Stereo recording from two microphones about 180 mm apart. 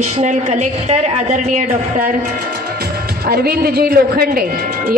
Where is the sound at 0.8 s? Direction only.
45° right (ahead or behind).